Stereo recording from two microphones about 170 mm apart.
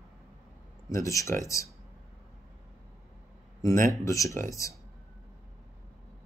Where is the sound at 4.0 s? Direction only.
20° left (ahead or behind).